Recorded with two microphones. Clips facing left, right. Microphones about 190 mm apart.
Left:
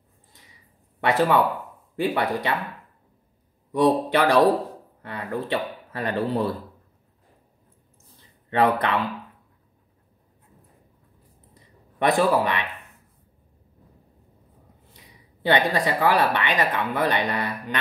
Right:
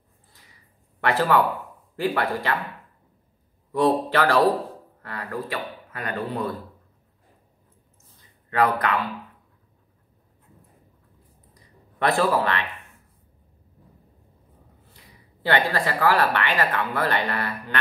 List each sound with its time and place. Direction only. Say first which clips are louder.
1.0 s speech: left 1 dB; 15° left (ahead or behind)
3.7 s speech: left 1 dB; 15° left (ahead or behind)
8.5 s speech: left 1 dB; 25° left (ahead or behind)
12.0 s speech: left 1 dB; 15° left (ahead or behind)
15.0 s speech: even; 15° left (ahead or behind)